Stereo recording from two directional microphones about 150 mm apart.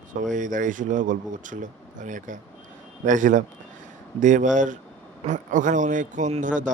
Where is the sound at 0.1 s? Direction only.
60° right (ahead or behind).